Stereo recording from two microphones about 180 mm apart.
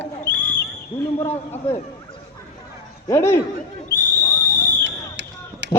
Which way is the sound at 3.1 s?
15° left (ahead or behind).